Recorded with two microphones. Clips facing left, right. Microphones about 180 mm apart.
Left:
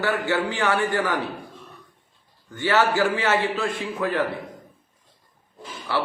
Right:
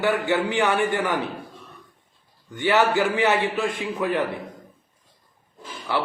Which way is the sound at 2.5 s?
15° right (ahead or behind).